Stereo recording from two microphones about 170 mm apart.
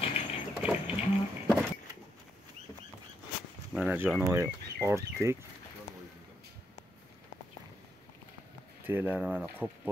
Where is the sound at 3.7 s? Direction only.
10° right (ahead or behind).